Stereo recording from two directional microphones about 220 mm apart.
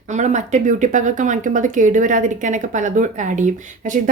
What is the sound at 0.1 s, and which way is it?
A woman's voice, 35° right (ahead or behind).